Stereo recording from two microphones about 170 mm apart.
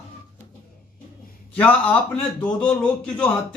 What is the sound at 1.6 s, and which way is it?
A man's voice, 10° left (ahead or behind).